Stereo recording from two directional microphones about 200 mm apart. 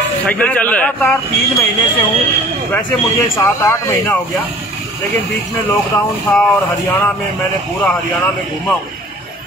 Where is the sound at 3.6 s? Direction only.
15° left (ahead or behind).